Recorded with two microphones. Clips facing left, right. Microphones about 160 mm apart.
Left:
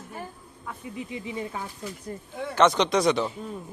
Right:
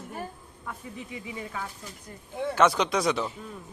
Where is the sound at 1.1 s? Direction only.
25° left (ahead or behind).